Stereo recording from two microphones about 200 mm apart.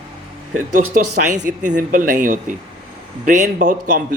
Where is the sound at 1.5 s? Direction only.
40° right (ahead or behind).